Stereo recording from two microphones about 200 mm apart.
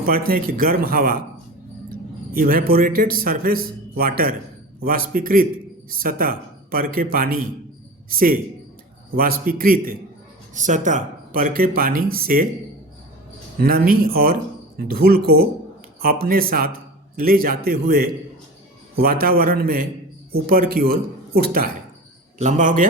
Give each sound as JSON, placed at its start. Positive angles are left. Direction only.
{"t": 0.0, "sound": "a man's voice", "side_deg": -45}
{"t": 2.3, "sound": "a man's voice", "side_deg": -45}
{"t": 13.6, "sound": "a man's voice", "side_deg": -50}
{"t": 22.4, "sound": "a man's voice", "side_deg": -40}